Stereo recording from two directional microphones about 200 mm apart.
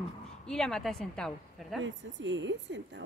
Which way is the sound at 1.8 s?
65° right (ahead or behind).